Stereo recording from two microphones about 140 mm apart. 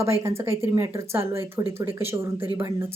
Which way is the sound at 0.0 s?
20° right (ahead or behind).